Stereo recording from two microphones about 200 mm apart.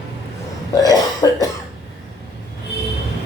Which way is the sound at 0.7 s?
20° left (ahead or behind).